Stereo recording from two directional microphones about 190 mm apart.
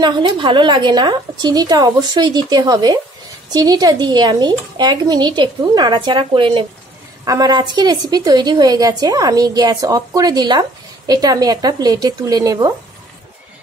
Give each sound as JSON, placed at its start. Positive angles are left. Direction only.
{"t": 0.0, "sound": "a woman's voice", "side_deg": -25}